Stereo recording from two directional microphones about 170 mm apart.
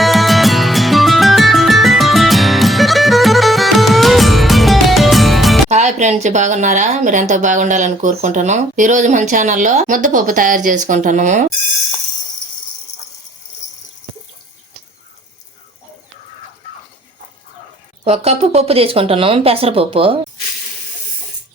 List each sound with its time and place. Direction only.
0.0 s music: centre (ahead or behind)
5.6 s speech: 45° right (ahead or behind)
18.0 s speech: 40° right (ahead or behind)